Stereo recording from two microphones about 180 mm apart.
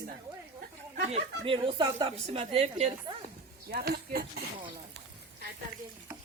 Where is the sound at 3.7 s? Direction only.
55° right (ahead or behind).